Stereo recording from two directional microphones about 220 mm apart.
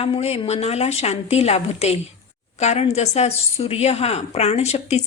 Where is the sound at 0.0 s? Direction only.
30° left (ahead or behind).